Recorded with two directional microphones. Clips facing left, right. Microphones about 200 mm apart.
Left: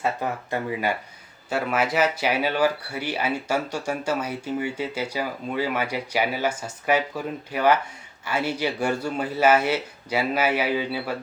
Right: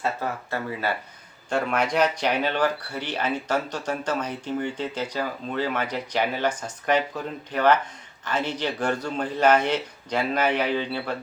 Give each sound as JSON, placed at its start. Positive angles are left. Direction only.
{"t": 0.0, "sound": "speech", "side_deg": 15}
{"t": 1.5, "sound": "speech", "side_deg": 5}